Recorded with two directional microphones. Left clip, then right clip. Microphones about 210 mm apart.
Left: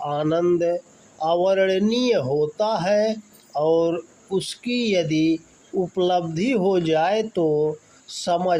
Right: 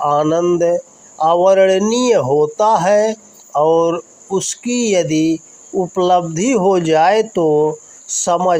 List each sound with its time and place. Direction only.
0.0 s speech: 20° right (ahead or behind)